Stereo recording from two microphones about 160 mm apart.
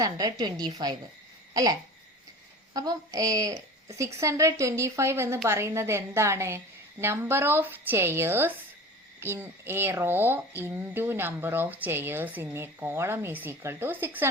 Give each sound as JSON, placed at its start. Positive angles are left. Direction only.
{"t": 0.0, "sound": "a woman's voice", "side_deg": -25}
{"t": 2.7, "sound": "a woman's voice", "side_deg": -25}